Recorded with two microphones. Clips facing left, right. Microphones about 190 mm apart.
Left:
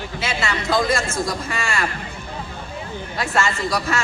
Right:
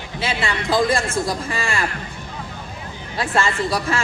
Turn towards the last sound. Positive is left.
turn(degrees=-30)  # may be behind; listen again after turning